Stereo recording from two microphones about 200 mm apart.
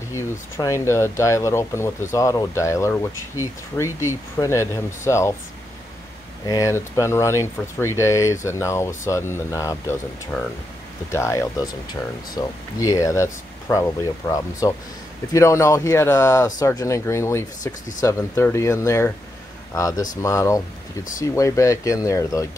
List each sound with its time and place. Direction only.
0.1 s speech: 15° left (ahead or behind)
6.4 s speech: 15° left (ahead or behind)